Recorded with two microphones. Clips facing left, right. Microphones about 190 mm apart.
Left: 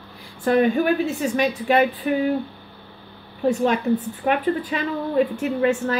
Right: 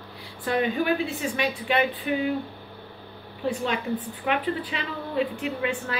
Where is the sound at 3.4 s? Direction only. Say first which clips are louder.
Left 7 dB; 45° left (ahead or behind).